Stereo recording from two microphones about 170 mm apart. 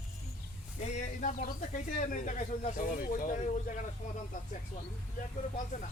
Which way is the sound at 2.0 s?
45° left (ahead or behind).